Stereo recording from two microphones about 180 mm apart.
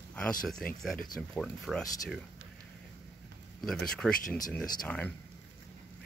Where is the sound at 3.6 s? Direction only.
Centre (ahead or behind).